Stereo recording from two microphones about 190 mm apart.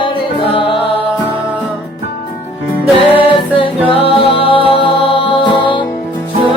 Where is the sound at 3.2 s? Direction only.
25° left (ahead or behind).